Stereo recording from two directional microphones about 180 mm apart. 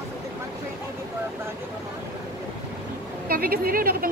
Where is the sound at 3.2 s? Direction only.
55° right (ahead or behind).